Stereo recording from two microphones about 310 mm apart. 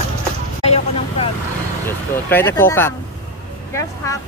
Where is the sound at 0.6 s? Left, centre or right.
Left.